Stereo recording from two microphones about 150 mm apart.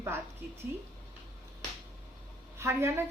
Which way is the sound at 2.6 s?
20° right (ahead or behind).